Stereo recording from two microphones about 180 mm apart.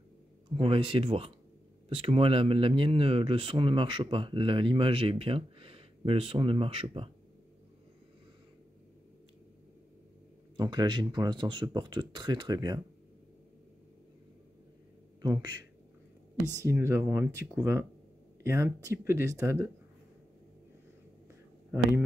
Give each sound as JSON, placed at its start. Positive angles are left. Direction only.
{"t": 0.6, "sound": "speech", "side_deg": -30}
{"t": 10.6, "sound": "speech", "side_deg": -25}
{"t": 15.2, "sound": "speech", "side_deg": -20}
{"t": 16.7, "sound": "speech", "side_deg": -15}